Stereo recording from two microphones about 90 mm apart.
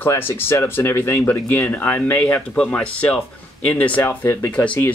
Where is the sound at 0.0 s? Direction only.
25° left (ahead or behind).